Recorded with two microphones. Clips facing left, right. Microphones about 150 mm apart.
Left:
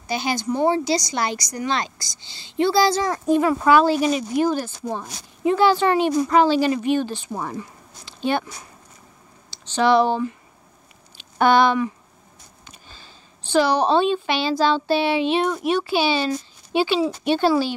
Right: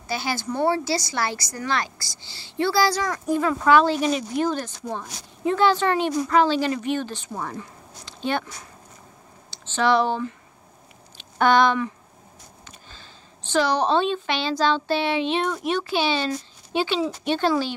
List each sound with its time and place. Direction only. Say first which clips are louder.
0.1 s a woman's voice: left 4 dB; 20° left (ahead or behind)
3.4 s a woman's voice: even; 5° left (ahead or behind)
9.7 s a woman's voice: left 3 dB; 15° left (ahead or behind)
11.3 s a woman's voice: left 2 dB; 10° left (ahead or behind)
12.9 s a woman's voice: even; 10° left (ahead or behind)